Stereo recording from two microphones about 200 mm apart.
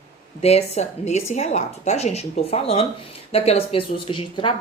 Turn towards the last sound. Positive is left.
turn(degrees=25)  # may be behind; listen again after turning